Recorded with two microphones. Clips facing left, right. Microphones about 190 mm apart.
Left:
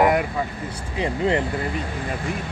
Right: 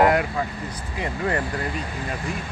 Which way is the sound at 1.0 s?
25° left (ahead or behind).